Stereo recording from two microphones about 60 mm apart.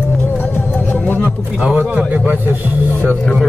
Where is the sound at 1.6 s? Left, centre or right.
Right.